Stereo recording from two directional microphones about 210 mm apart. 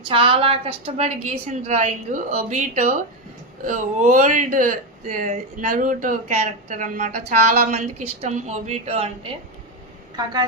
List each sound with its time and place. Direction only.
0.0 s speech: 25° right (ahead or behind)
10.2 s a woman's voice: 20° right (ahead or behind)